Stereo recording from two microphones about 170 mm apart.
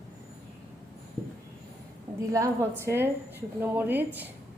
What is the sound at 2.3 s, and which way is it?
A woman's voice, 20° right (ahead or behind).